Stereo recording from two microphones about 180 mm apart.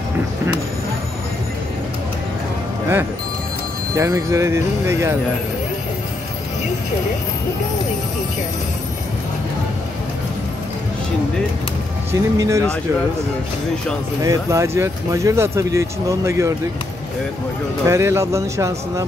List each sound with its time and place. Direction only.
3.9 s speech: 15° right (ahead or behind)
12.1 s speech: 15° right (ahead or behind)
14.2 s speech: 15° right (ahead or behind)
17.8 s speech: 15° right (ahead or behind)